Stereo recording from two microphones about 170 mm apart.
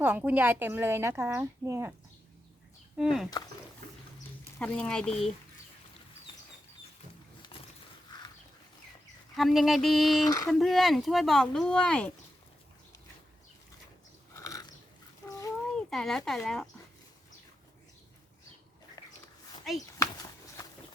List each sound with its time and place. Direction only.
0.0 s speech: 10° right (ahead or behind)
3.0 s speech: centre (ahead or behind)
3.2 s speech: 20° left (ahead or behind)
4.6 s speech: 5° left (ahead or behind)
7.5 s a sound: 30° left (ahead or behind)
9.3 s speech: centre (ahead or behind)
10.2 s speech: 20° left (ahead or behind)
10.5 s speech: centre (ahead or behind)
14.3 s biting: 20° left (ahead or behind)
15.7 s speech: 5° left (ahead or behind)